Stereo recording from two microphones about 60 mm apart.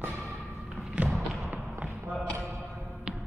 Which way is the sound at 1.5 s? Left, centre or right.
Right.